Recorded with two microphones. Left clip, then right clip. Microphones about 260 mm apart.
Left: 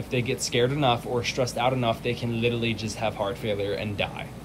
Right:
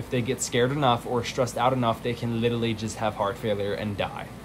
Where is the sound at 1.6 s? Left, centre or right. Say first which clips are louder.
Right 2 dB; right.